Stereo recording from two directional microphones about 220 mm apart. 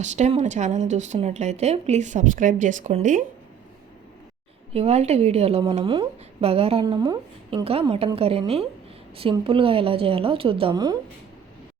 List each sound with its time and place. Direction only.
0.0 s speech: 30° right (ahead or behind)
4.7 s a woman's voice: 30° right (ahead or behind)